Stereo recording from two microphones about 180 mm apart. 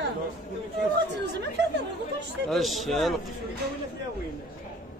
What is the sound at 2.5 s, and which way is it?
Speech, centre (ahead or behind).